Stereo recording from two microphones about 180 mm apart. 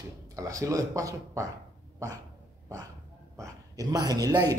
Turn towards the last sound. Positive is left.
turn(degrees=-20)  # may be behind; listen again after turning